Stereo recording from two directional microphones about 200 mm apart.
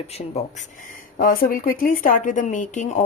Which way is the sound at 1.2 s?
45° left (ahead or behind).